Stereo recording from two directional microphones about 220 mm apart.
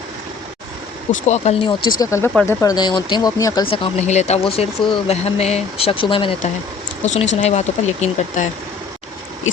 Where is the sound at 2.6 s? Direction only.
15° left (ahead or behind).